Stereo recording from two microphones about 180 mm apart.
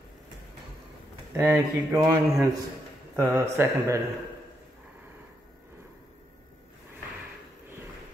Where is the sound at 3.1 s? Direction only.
15° right (ahead or behind).